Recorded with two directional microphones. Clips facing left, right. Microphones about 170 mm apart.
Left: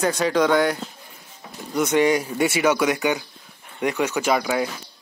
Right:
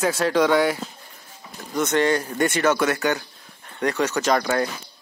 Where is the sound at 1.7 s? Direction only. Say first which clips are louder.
Left 2 dB; 10° left (ahead or behind).